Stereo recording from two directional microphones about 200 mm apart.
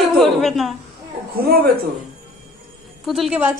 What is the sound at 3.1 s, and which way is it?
Speech, centre (ahead or behind).